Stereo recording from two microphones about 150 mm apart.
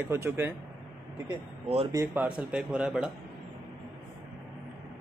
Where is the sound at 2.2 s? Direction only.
5° right (ahead or behind).